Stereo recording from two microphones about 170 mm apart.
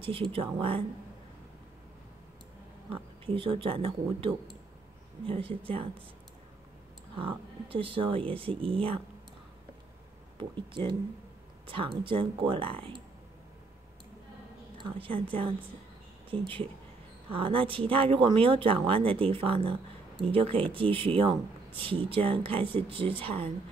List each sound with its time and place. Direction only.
0.0 s speech: 30° right (ahead or behind)
2.9 s speech: 30° right (ahead or behind)
7.2 s speech: 30° right (ahead or behind)
10.3 s a woman's voice: 30° right (ahead or behind)
15.0 s speech: 30° right (ahead or behind)